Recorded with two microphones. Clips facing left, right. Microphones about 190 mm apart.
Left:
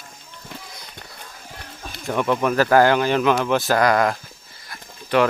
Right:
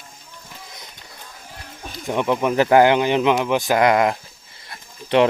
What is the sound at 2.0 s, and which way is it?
Speech, 15° right (ahead or behind).